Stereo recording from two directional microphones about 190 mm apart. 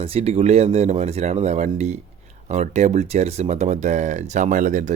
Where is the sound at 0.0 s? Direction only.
30° right (ahead or behind).